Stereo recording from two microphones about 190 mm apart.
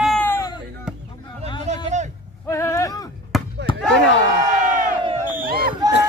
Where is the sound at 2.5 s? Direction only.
15° left (ahead or behind).